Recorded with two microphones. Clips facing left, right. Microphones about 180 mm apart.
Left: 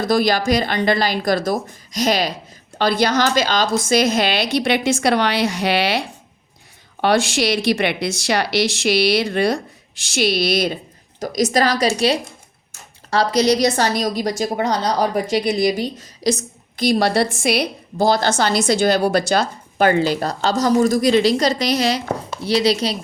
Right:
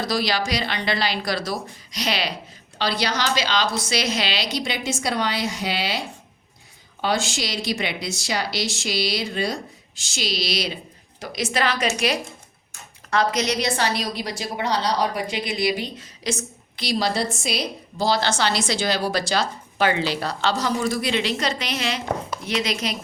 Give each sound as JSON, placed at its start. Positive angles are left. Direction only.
{"t": 0.0, "sound": "a woman's voice", "side_deg": 50}
{"t": 7.0, "sound": "a woman's voice", "side_deg": 65}
{"t": 11.2, "sound": "a woman's voice", "side_deg": 40}